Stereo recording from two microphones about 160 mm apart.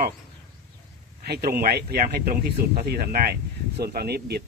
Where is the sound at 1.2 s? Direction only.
90° right.